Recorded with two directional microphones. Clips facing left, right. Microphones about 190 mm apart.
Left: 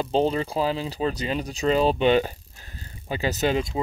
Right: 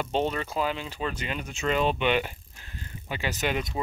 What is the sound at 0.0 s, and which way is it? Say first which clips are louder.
Speech: left 5 dB; 30° left (ahead or behind).